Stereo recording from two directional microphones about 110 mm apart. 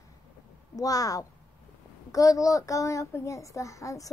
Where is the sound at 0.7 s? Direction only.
35° left (ahead or behind).